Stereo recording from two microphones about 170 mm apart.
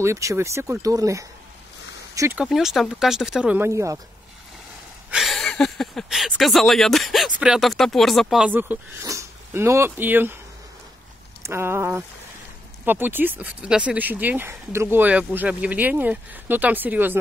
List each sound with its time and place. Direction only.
0.0 s speech: 15° right (ahead or behind)
2.3 s speech: 5° right (ahead or behind)
5.1 s speech: centre (ahead or behind)
11.4 s speech: 15° right (ahead or behind)